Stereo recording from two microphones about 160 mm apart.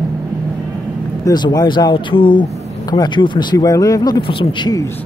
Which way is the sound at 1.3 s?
25° left (ahead or behind).